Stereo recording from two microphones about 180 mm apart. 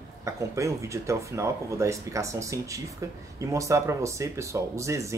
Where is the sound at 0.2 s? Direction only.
15° right (ahead or behind).